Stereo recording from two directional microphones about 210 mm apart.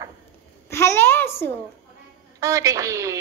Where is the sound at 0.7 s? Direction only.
10° left (ahead or behind).